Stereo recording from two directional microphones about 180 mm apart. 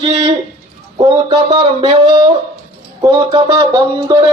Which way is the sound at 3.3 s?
25° right (ahead or behind).